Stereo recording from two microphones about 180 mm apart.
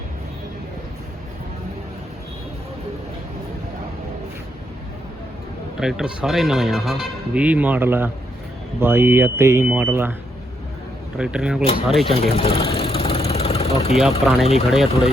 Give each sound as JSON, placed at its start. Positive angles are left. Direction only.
{"t": 5.8, "sound": "speech", "side_deg": 0}
{"t": 11.2, "sound": "speech", "side_deg": -5}
{"t": 12.0, "sound": "speech", "side_deg": 30}
{"t": 12.6, "sound": "vehicle", "side_deg": 35}
{"t": 13.9, "sound": "speech", "side_deg": 0}